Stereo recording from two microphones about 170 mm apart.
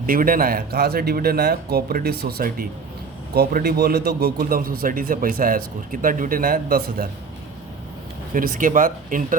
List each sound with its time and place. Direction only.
0.0 s a man's voice: 55° right (ahead or behind)
8.3 s speech: 55° right (ahead or behind)